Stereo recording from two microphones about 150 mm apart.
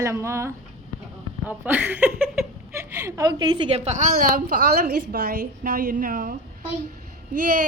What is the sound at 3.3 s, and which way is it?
Speech, 30° right (ahead or behind).